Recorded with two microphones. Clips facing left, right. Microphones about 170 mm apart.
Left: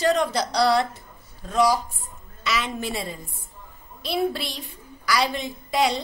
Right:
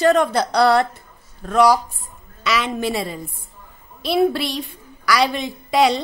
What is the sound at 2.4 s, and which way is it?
A woman's voice, 85° right.